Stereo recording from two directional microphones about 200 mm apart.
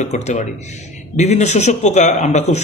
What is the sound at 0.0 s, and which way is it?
A man's voice, 35° left (ahead or behind).